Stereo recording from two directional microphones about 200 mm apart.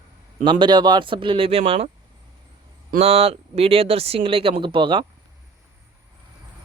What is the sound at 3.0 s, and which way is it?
Speech, 30° right (ahead or behind).